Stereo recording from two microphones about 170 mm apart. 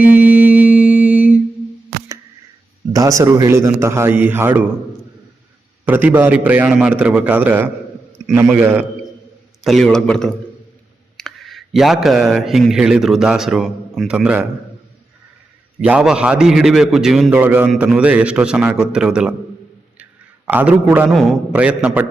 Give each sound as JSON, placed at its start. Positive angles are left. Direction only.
{"t": 0.0, "sound": "music", "side_deg": -10}
{"t": 2.9, "sound": "a man's voice", "side_deg": -20}
{"t": 5.8, "sound": "a man's voice", "side_deg": -10}
{"t": 15.8, "sound": "a man's voice", "side_deg": -5}